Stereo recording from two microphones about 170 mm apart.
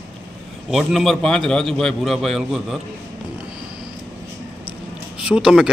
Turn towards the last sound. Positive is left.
turn(degrees=-5)  # may be behind; listen again after turning